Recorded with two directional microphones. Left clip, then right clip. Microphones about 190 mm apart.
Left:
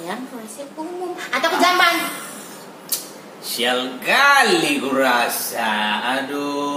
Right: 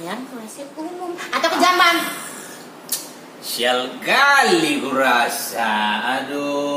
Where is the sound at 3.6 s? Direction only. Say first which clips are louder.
Right 1 dB; 15° right (ahead or behind).